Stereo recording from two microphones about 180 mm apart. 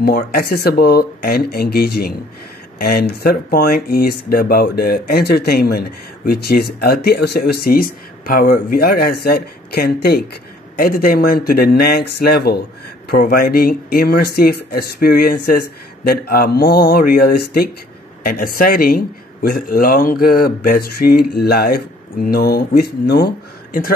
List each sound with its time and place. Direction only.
0.0 s speech: 55° left (ahead or behind)